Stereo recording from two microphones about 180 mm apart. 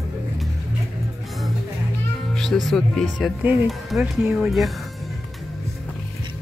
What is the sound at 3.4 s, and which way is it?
Speech, 10° right (ahead or behind).